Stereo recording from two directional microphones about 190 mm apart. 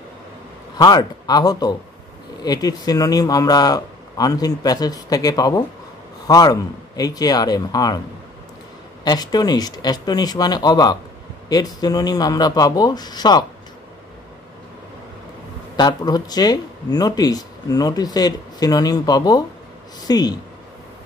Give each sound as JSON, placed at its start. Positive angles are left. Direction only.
{"t": 0.7, "sound": "speech", "side_deg": 20}
{"t": 9.0, "sound": "speech", "side_deg": 20}
{"t": 15.7, "sound": "speech", "side_deg": 20}